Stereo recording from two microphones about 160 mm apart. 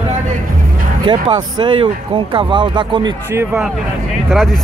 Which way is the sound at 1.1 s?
30° right (ahead or behind).